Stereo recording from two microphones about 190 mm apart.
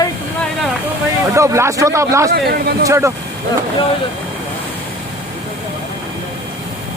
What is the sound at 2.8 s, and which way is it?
Speech, 15° right (ahead or behind).